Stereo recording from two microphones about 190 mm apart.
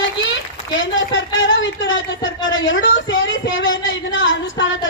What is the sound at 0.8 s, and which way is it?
A woman's voice, 85° left.